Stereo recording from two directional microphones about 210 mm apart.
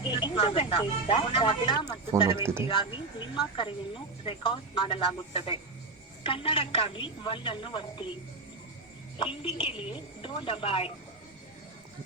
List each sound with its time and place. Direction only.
0.0 s speech: 25° left (ahead or behind)
2.3 s speech: 10° right (ahead or behind)
2.6 s speech: 20° left (ahead or behind)
9.1 s speech: 25° left (ahead or behind)